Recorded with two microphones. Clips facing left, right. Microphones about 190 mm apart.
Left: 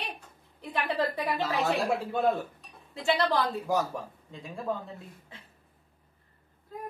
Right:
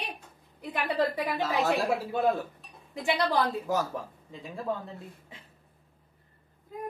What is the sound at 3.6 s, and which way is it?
Speech, centre (ahead or behind).